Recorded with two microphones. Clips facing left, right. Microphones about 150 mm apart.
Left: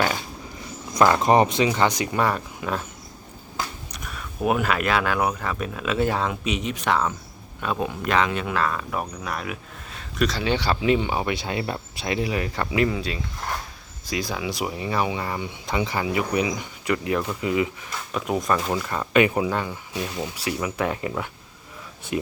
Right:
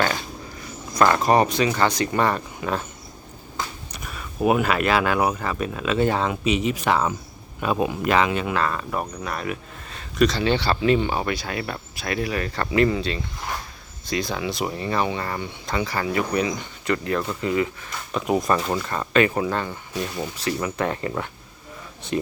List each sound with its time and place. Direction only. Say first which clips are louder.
0.9 s speech: even; 20° left (ahead or behind)
2.0 s speech: right 1 dB; 5° left (ahead or behind)
3.9 s speech: right 5 dB; centre (ahead or behind)
11.3 s speech: left 2 dB; 25° left (ahead or behind)
18.1 s speech: right 2 dB; 5° right (ahead or behind)
19.1 s speech: even; 15° left (ahead or behind)